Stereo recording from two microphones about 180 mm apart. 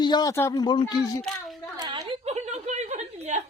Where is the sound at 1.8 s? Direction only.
25° right (ahead or behind).